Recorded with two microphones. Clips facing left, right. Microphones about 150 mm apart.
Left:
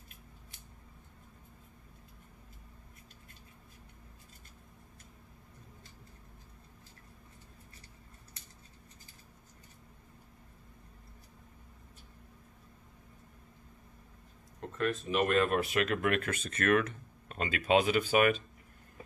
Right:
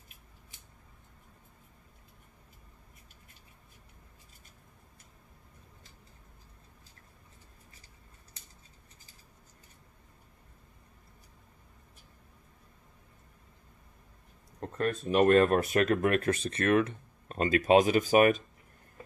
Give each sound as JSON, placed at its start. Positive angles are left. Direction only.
{"t": 14.8, "sound": "speech", "side_deg": -40}
{"t": 17.4, "sound": "speech", "side_deg": -40}